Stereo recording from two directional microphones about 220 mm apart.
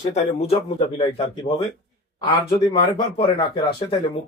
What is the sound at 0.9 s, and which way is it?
Speech, 25° left (ahead or behind).